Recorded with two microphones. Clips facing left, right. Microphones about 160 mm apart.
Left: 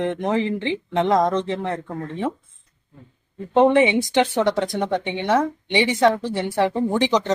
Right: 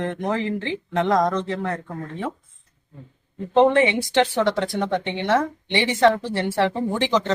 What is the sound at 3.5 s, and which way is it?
A woman's voice, 15° left (ahead or behind).